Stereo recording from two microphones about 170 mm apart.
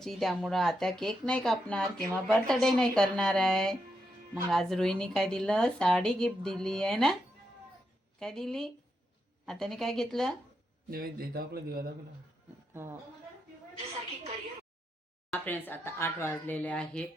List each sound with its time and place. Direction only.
0.0 s speech: centre (ahead or behind)
8.2 s speech: 5° left (ahead or behind)
10.9 s speech: 60° right (ahead or behind)
12.7 s a woman's voice: 15° right (ahead or behind)
15.3 s speech: 10° left (ahead or behind)